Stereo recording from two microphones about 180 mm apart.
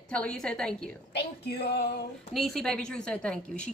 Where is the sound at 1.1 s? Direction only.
65° left (ahead or behind).